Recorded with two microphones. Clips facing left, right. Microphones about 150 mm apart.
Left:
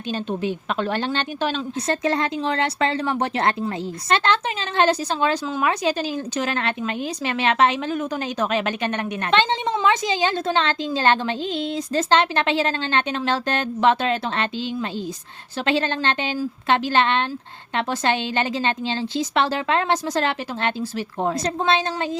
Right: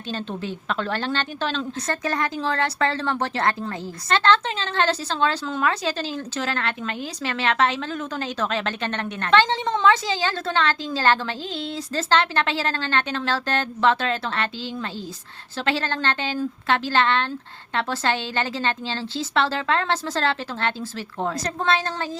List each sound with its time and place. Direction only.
0.1 s a woman's voice: 15° left (ahead or behind)
2.0 s a woman's voice: 25° left (ahead or behind)